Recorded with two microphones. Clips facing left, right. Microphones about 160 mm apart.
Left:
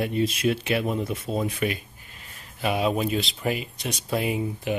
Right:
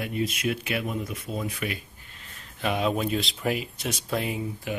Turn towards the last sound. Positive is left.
turn(degrees=20)  # may be behind; listen again after turning